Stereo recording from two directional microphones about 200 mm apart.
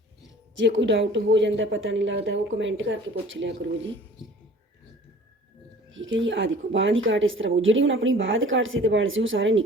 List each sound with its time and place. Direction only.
0.5 s speech: 65° right (ahead or behind)
5.9 s speech: 70° right (ahead or behind)